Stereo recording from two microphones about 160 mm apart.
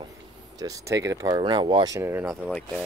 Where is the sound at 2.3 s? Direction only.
10° left (ahead or behind).